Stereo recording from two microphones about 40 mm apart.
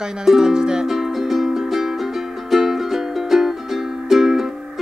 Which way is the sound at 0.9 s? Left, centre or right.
Centre.